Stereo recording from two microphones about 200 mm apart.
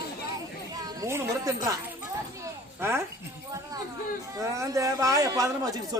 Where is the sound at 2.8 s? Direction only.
10° right (ahead or behind).